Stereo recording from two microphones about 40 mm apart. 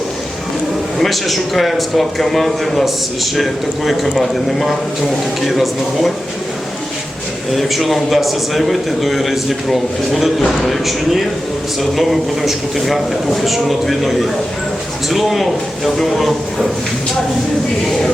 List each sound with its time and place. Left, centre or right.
0.9 s a man's voice: centre
7.5 s a man's voice: centre